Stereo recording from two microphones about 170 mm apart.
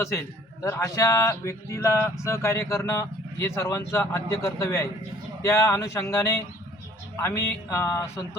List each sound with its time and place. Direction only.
0.0 s speech: 15° left (ahead or behind)